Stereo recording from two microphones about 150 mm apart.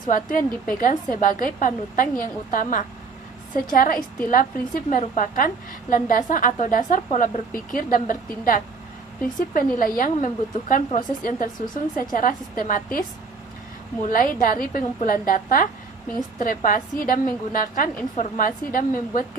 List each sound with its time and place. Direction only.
0.1 s a woman's voice: 65° left (ahead or behind)